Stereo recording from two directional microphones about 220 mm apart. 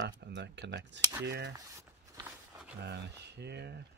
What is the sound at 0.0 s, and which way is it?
Speech, 50° right (ahead or behind).